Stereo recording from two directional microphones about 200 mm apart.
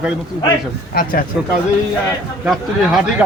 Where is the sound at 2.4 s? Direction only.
Centre (ahead or behind).